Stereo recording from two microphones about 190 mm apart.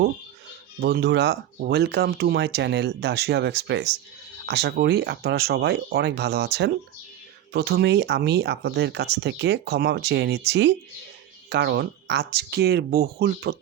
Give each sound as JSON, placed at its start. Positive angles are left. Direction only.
{"t": 0.8, "sound": "speech", "side_deg": -55}